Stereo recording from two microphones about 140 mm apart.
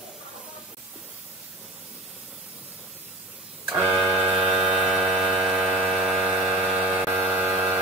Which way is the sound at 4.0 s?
5° right (ahead or behind).